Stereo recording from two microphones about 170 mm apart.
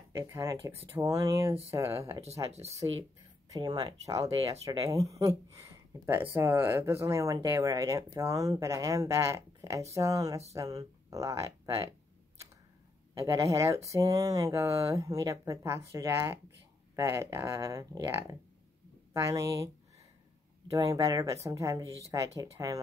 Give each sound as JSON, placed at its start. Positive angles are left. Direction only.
{"t": 0.1, "sound": "speech", "side_deg": -15}
{"t": 2.5, "sound": "speech", "side_deg": -40}
{"t": 3.5, "sound": "speech", "side_deg": -20}
{"t": 13.2, "sound": "speech", "side_deg": -20}
{"t": 20.7, "sound": "speech", "side_deg": -20}